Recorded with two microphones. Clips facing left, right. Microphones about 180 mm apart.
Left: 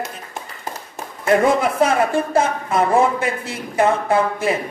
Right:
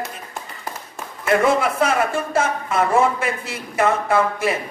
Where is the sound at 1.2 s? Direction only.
35° left (ahead or behind).